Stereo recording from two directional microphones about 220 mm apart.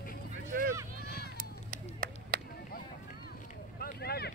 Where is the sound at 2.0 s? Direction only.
40° right (ahead or behind).